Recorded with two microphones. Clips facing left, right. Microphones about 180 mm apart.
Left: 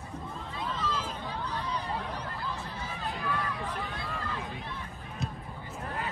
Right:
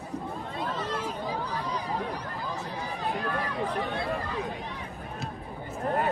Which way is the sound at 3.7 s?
65° right (ahead or behind).